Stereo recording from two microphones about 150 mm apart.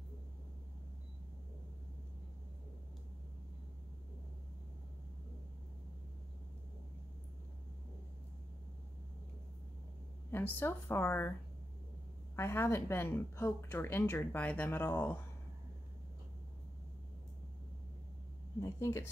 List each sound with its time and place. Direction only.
10.3 s a woman's voice: 15° left (ahead or behind)
12.4 s a woman's voice: 15° left (ahead or behind)
18.6 s a woman's voice: 20° left (ahead or behind)